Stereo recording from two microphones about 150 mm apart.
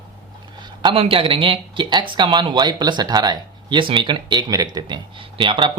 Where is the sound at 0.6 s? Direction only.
35° right (ahead or behind).